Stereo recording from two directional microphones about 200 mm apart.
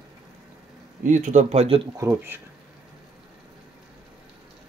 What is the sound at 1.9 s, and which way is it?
Speech, 10° right (ahead or behind).